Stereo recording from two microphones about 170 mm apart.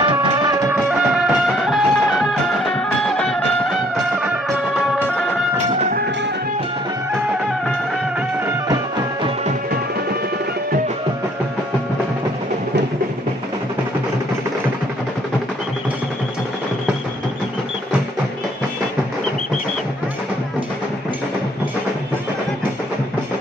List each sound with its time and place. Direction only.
0.0 s music: 25° right (ahead or behind)
0.8 s music: 5° right (ahead or behind)